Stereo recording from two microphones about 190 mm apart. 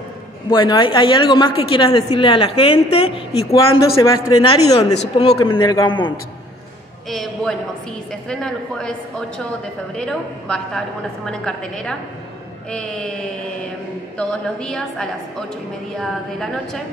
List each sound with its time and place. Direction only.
0.5 s a woman's voice: 25° left (ahead or behind)
3.5 s a woman's voice: 15° left (ahead or behind)
7.1 s a woman's voice: centre (ahead or behind)
9.9 s a woman's voice: centre (ahead or behind)
14.1 s a woman's voice: 5° left (ahead or behind)